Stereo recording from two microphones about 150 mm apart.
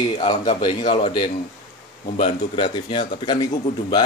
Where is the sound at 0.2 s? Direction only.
35° left (ahead or behind).